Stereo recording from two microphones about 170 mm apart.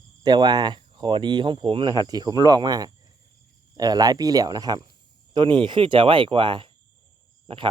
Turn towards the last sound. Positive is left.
turn(degrees=-30)  # may be behind; listen again after turning